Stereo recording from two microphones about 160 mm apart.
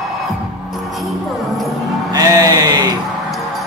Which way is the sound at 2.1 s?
25° right (ahead or behind).